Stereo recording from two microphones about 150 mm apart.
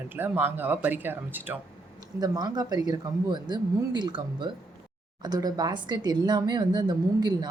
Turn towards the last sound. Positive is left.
turn(degrees=-30)  # may be behind; listen again after turning